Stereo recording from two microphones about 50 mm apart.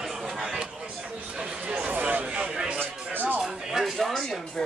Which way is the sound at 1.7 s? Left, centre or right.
Right.